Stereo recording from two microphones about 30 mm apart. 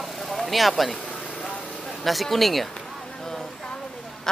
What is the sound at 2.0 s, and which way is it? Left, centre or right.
Speech, centre.